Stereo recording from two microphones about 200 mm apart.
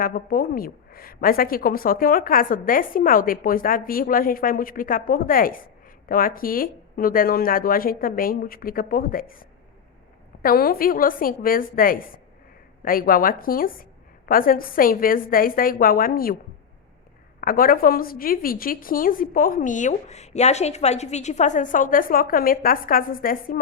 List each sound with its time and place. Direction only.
0.0 s a woman's voice: 45° left (ahead or behind)
17.4 s a woman's voice: 45° left (ahead or behind)